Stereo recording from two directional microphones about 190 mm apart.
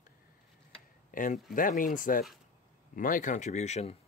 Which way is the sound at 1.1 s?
45° left (ahead or behind).